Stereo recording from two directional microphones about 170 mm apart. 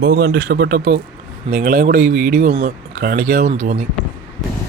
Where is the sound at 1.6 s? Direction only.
50° right (ahead or behind); by 3.4 s 70° right (ahead or behind).